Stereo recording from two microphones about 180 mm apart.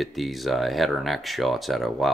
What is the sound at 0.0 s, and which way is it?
Speech, centre (ahead or behind).